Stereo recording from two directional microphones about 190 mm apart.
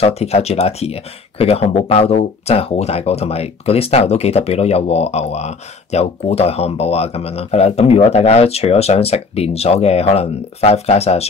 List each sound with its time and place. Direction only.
0.0 s speech: 30° left (ahead or behind)